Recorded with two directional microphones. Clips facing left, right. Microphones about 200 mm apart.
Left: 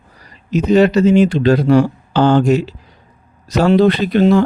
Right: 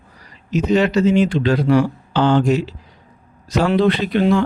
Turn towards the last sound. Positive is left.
turn(degrees=40)  # may be behind; listen again after turning